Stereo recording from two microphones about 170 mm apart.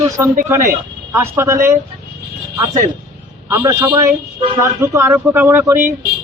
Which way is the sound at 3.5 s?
15° right (ahead or behind).